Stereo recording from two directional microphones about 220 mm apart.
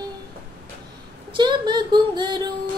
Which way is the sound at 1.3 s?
20° right (ahead or behind).